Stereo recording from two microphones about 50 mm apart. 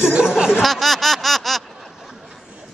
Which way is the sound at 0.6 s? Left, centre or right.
Centre.